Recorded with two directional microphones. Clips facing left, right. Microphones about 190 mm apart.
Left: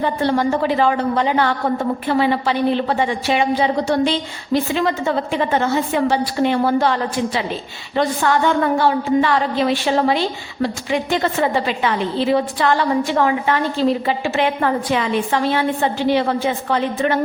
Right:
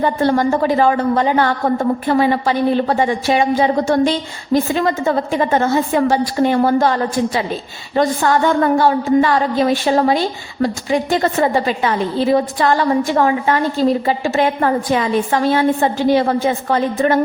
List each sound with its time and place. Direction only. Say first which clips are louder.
0.0 s a woman's voice: right 3 dB; 45° right (ahead or behind)